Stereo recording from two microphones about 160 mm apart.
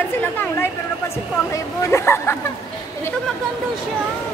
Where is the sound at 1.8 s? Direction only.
15° left (ahead or behind).